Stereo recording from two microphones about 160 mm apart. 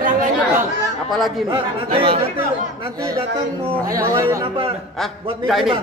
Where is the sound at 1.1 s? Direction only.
Centre (ahead or behind).